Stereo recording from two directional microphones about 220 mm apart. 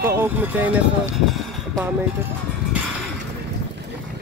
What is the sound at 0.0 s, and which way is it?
Speech, 10° right (ahead or behind).